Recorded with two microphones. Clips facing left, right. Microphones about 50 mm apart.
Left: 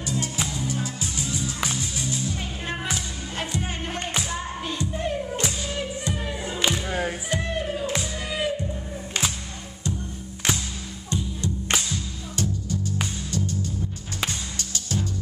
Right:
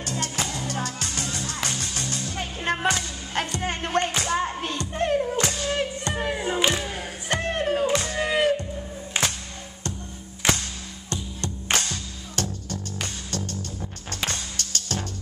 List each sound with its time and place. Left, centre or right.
0.0 s music: right
9.1 s music: right
11.1 s music: right